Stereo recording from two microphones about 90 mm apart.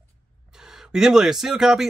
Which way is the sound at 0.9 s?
5° right (ahead or behind).